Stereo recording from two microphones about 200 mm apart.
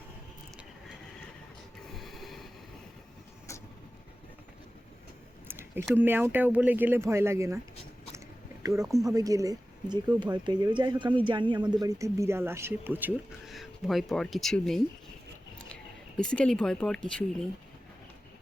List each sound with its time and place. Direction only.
1.9 s a sound: centre (ahead or behind)
5.9 s speech: 10° right (ahead or behind)
8.6 s speech: 15° right (ahead or behind); by 17.0 s 5° left (ahead or behind)